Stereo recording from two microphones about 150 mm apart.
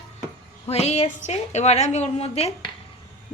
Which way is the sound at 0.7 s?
45° left (ahead or behind).